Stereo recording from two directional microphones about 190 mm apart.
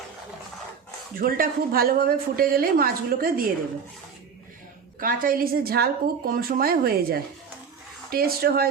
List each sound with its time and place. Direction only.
1.1 s a woman's voice: 50° right (ahead or behind)
4.9 s a woman's voice: 45° right (ahead or behind)